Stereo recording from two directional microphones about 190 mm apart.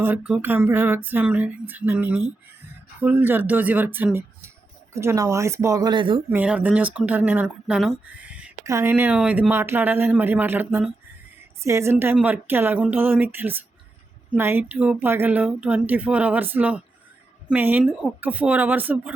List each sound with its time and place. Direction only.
0.0 s speech: 10° right (ahead or behind); by 6.2 s 25° right (ahead or behind)
6.3 s speech: 5° right (ahead or behind)